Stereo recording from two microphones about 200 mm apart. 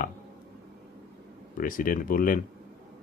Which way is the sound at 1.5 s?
45° left (ahead or behind).